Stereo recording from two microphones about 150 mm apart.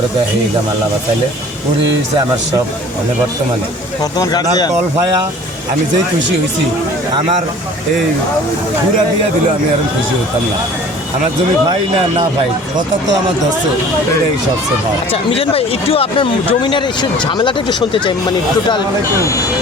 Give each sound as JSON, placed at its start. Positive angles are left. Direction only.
{"t": 4.2, "sound": "speech", "side_deg": 25}
{"t": 15.1, "sound": "speech", "side_deg": 40}